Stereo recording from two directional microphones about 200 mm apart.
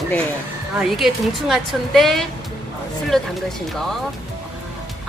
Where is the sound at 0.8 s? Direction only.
Centre (ahead or behind).